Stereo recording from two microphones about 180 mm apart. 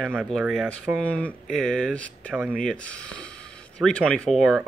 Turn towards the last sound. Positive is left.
turn(degrees=5)  # may be behind; listen again after turning